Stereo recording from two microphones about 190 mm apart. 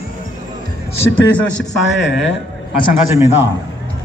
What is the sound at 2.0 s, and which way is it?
Speech, 65° left (ahead or behind).